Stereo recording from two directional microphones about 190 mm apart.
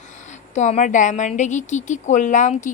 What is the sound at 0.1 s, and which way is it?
A woman's voice, 40° left (ahead or behind).